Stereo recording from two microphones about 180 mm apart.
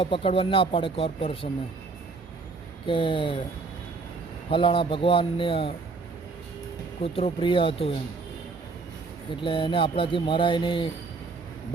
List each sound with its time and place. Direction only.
0.0 s speech: 30° left (ahead or behind)
2.8 s speech: 30° left (ahead or behind)
4.4 s speech: 30° left (ahead or behind)
7.0 s speech: 30° left (ahead or behind)
9.3 s speech: 30° left (ahead or behind)